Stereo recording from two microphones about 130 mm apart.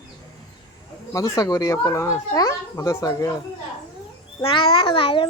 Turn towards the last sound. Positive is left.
turn(degrees=40)  # may be behind; listen again after turning